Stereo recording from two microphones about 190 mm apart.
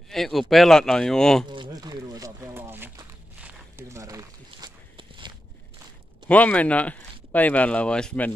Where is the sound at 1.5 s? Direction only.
25° right (ahead or behind).